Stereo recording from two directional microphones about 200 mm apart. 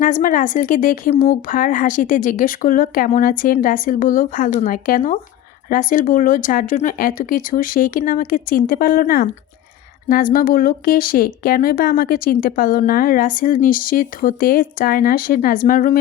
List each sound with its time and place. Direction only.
0.0 s a woman's voice: 40° left (ahead or behind)